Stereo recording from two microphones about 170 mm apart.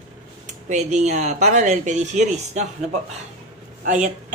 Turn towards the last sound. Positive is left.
turn(degrees=-45)  # may be behind; listen again after turning